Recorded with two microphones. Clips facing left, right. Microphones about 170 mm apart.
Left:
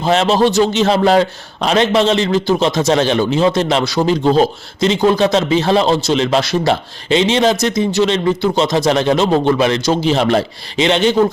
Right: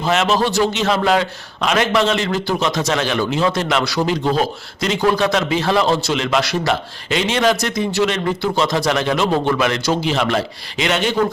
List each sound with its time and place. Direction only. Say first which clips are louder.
0.0 s a man's voice: left 4 dB; 30° left (ahead or behind)